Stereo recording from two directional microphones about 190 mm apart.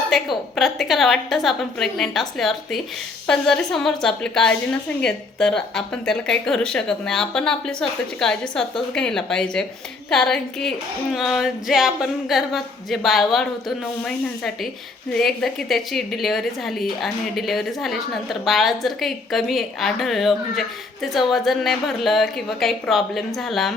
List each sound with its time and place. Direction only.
0.5 s a woman's voice: centre (ahead or behind)